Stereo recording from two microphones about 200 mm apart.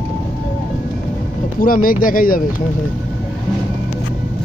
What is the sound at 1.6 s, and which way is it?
Speech, 45° left (ahead or behind).